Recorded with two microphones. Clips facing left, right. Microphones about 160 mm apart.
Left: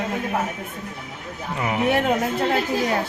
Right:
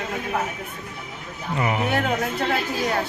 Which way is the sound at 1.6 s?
Centre (ahead or behind).